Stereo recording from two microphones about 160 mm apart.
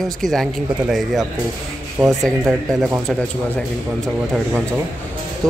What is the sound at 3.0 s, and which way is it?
Speech, 10° left (ahead or behind).